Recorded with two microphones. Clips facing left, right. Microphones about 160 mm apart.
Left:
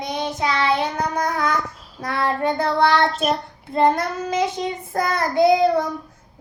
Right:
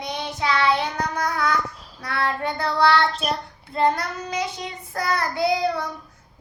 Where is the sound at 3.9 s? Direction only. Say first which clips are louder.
Left 5 dB; 50° left (ahead or behind).